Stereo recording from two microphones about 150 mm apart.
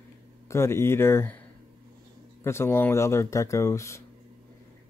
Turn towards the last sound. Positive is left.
turn(degrees=20)  # may be behind; listen again after turning